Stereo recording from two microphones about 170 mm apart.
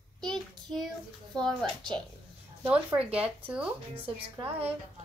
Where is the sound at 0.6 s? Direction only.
Centre (ahead or behind).